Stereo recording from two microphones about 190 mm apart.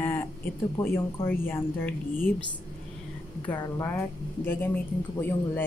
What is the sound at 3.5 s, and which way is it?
Speech, 15° left (ahead or behind).